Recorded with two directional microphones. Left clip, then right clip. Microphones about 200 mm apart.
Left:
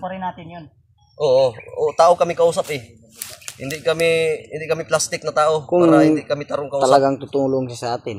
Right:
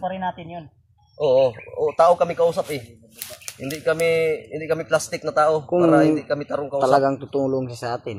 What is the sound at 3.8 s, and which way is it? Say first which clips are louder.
Speech: left 2 dB; 45° left (ahead or behind).